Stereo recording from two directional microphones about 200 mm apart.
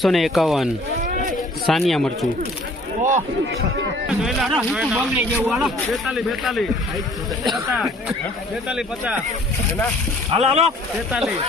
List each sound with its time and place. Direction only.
0.0 s speech: centre (ahead or behind)
1.7 s speech: centre (ahead or behind)
4.1 s speech: centre (ahead or behind)
10.3 s speech: 30° right (ahead or behind)
11.1 s speech: centre (ahead or behind)